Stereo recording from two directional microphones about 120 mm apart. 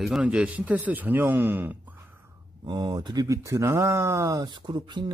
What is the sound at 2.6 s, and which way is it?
Speech, 40° right (ahead or behind).